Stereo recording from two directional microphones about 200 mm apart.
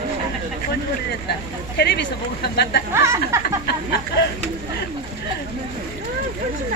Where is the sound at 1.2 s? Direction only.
55° left (ahead or behind).